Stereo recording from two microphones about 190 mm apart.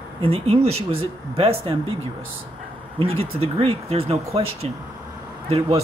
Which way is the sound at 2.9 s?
30° right (ahead or behind).